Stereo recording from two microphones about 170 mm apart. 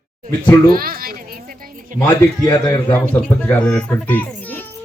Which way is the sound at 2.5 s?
20° left (ahead or behind).